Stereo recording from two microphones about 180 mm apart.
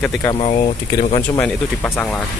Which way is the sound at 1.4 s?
10° left (ahead or behind).